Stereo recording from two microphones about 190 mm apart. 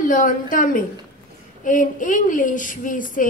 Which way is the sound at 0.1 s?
45° left (ahead or behind).